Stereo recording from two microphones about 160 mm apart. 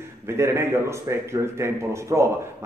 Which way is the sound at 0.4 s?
15° right (ahead or behind).